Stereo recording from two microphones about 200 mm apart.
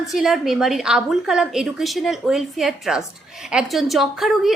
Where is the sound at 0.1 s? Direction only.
Centre (ahead or behind).